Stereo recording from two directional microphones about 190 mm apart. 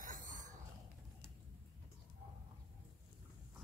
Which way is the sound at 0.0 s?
45° right (ahead or behind).